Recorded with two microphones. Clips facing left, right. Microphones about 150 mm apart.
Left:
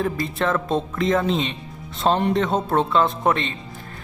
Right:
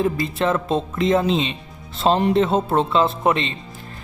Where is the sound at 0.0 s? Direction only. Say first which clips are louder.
Right 2 dB; 25° right (ahead or behind).